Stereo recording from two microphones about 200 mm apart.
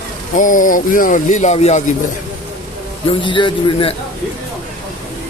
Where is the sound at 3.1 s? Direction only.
25° left (ahead or behind).